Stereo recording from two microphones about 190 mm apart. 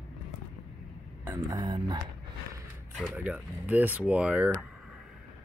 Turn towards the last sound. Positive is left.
turn(degrees=-5)  # may be behind; listen again after turning